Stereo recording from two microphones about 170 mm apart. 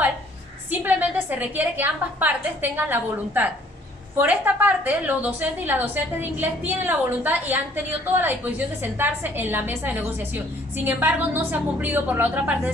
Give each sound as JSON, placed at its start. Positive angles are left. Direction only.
{"t": 0.7, "sound": "a woman's voice", "side_deg": -10}